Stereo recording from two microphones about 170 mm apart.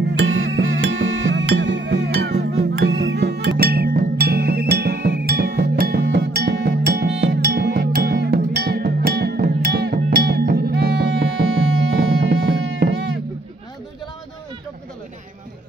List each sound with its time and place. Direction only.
0.7 s music: 90° right